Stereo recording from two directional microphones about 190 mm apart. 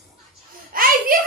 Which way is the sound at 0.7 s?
50° right (ahead or behind).